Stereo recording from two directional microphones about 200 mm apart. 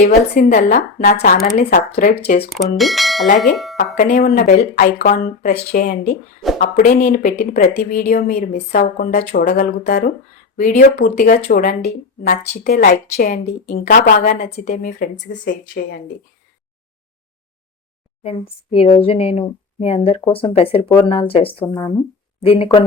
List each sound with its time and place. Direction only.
0.3 s speech: 40° left (ahead or behind)
2.5 s speech: centre (ahead or behind)
3.9 s speech: 40° left (ahead or behind)
10.8 s speech: 50° left (ahead or behind)
18.2 s speech: 30° left (ahead or behind)